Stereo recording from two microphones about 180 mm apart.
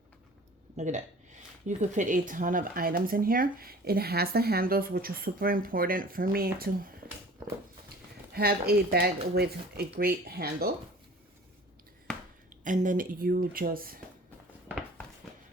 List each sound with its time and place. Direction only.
0.8 s speech: 40° right (ahead or behind)
8.3 s speech: 60° right (ahead or behind)
12.6 s speech: 45° right (ahead or behind)